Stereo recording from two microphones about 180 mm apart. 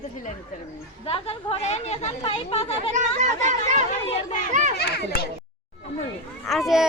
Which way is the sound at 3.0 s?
40° right (ahead or behind).